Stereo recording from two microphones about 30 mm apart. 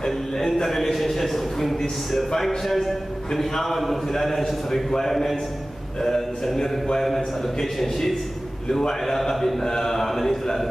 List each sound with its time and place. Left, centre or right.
0.6 s a man's voice: centre
9.0 s a man's voice: centre